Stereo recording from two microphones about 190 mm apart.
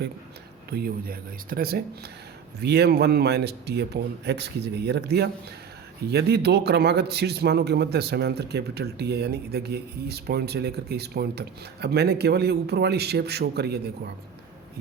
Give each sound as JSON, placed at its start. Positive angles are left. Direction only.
{"t": 0.7, "sound": "a man's voice", "side_deg": -55}